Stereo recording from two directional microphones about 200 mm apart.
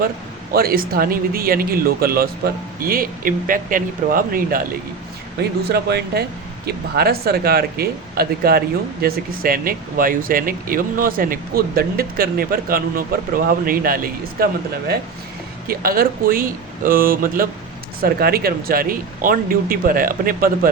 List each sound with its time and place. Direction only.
0.5 s speech: 50° right (ahead or behind)
15.6 s speech: 45° right (ahead or behind)